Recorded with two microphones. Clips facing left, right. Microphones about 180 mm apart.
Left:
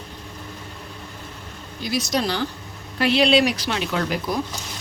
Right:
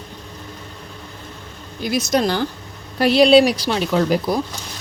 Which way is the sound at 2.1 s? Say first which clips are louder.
Right 6 dB; 50° right (ahead or behind).